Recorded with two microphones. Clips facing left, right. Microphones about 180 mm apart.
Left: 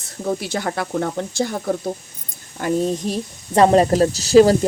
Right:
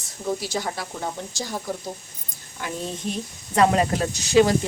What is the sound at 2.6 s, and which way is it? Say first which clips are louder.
A woman's voice: left 10 dB; 35° left (ahead or behind).